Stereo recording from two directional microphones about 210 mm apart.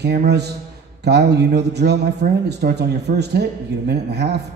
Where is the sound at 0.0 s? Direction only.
50° right (ahead or behind).